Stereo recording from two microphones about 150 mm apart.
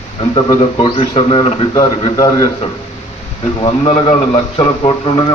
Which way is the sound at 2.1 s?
25° left (ahead or behind).